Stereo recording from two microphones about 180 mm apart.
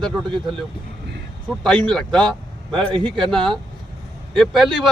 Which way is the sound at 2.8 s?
25° right (ahead or behind).